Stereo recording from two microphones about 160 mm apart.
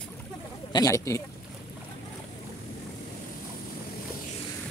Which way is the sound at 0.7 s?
20° left (ahead or behind).